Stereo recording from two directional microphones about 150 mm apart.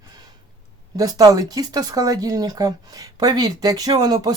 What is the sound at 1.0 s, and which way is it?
Speech, 25° right (ahead or behind).